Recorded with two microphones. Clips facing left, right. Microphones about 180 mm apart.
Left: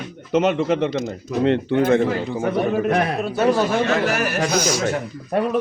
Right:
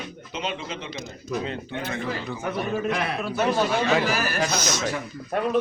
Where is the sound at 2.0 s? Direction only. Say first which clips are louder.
Left 9 dB; 50° left (ahead or behind).